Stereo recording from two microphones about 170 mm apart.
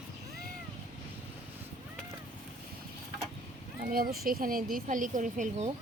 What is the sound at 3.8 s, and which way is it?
Speech, 60° right (ahead or behind).